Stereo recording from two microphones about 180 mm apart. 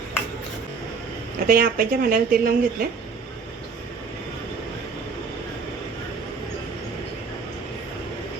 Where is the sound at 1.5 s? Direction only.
55° right (ahead or behind).